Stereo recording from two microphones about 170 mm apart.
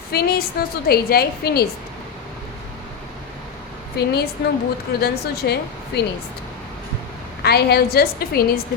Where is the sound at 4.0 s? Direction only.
70° left (ahead or behind).